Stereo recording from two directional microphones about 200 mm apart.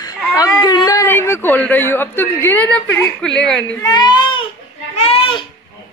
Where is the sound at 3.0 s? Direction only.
5° left (ahead or behind).